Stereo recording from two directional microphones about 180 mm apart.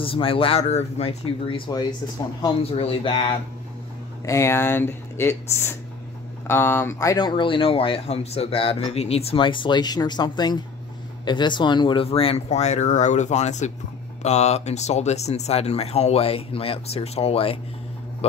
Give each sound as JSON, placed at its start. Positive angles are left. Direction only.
{"t": 0.0, "sound": "speech", "side_deg": 30}
{"t": 4.3, "sound": "speech", "side_deg": 15}